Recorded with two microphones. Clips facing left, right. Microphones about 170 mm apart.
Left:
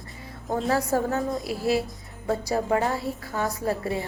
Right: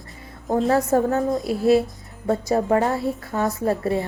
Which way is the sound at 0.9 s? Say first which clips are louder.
Right 6 dB; 25° right (ahead or behind).